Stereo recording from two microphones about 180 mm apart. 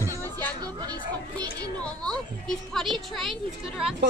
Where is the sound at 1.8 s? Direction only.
5° left (ahead or behind).